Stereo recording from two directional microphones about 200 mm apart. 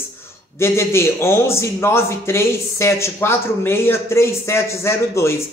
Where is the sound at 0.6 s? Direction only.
15° left (ahead or behind).